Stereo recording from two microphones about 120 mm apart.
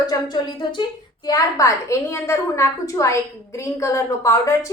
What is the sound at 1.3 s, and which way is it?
A woman's voice, 30° left (ahead or behind).